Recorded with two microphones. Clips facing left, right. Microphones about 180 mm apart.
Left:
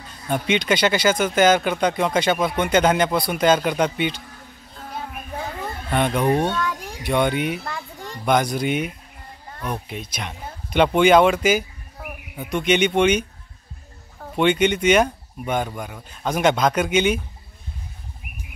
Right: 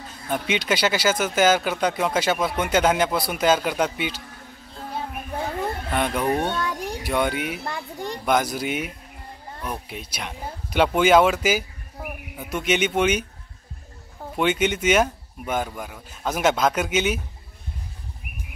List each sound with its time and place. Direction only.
0.3 s speech: 5° right (ahead or behind)
5.9 s speech: 5° right (ahead or behind)
6.5 s a sound: 20° right (ahead or behind)
7.0 s speech: 5° right (ahead or behind)
14.3 s speech: 5° right (ahead or behind)